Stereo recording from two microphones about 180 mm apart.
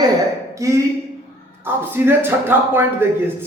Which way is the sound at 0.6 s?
15° right (ahead or behind).